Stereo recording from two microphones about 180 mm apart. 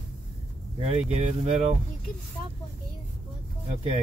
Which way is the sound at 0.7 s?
35° right (ahead or behind).